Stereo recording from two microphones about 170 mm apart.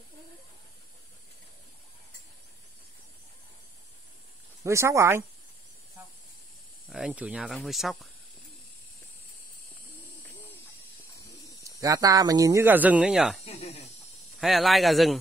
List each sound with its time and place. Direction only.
4.6 s speech: 15° right (ahead or behind)
6.9 s speech: 5° right (ahead or behind)
11.6 s speech: 20° right (ahead or behind); by 13.4 s 5° right (ahead or behind)
13.5 s snake: 35° left (ahead or behind)
14.3 s speech: centre (ahead or behind)